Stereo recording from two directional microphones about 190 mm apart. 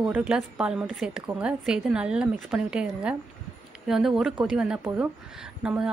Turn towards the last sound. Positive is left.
turn(degrees=-5)  # may be behind; listen again after turning